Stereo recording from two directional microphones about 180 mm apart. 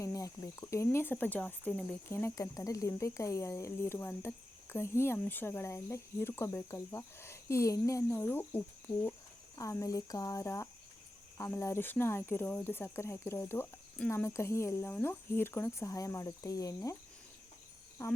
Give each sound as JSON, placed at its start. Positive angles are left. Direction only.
{"t": 0.0, "sound": "speech", "side_deg": 20}
{"t": 18.0, "sound": "speech", "side_deg": 15}